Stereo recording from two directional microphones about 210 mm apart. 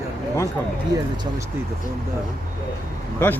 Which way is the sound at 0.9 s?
20° right (ahead or behind).